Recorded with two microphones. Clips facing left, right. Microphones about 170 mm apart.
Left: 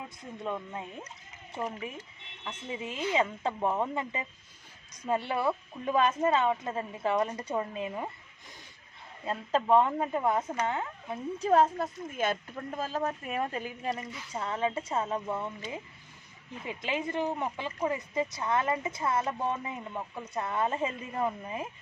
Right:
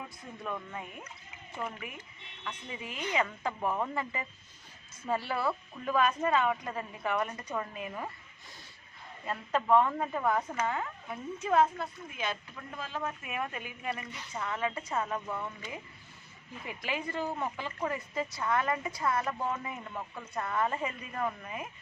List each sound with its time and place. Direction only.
0.2 s speech: 20° left (ahead or behind)
9.2 s speech: 25° left (ahead or behind)